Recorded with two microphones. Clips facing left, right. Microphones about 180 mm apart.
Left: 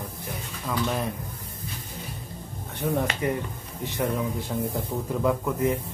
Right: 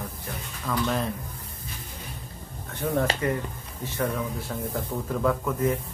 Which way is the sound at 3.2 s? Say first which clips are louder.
Even; 15° left (ahead or behind).